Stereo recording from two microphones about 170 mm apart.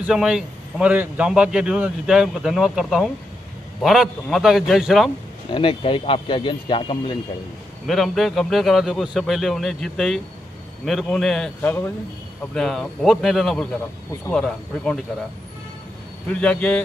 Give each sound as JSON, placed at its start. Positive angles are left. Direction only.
{"t": 0.0, "sound": "a man's voice", "side_deg": -5}
{"t": 5.5, "sound": "speech", "side_deg": 30}
{"t": 7.8, "sound": "a man's voice", "side_deg": 0}
{"t": 16.3, "sound": "a man's voice", "side_deg": 5}